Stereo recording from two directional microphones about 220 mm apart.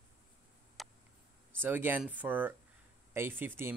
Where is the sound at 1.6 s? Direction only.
10° right (ahead or behind).